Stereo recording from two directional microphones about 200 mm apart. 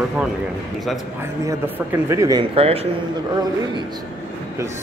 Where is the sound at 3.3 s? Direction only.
20° right (ahead or behind).